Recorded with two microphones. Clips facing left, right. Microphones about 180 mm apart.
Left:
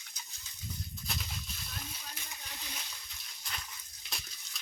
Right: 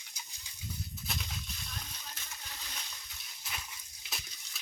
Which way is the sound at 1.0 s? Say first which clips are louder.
Even; centre (ahead or behind).